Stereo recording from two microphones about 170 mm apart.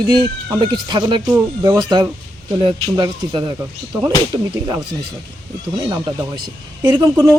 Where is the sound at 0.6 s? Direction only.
25° right (ahead or behind).